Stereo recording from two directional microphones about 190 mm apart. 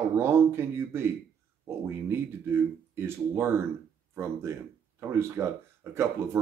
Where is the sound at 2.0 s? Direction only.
10° right (ahead or behind).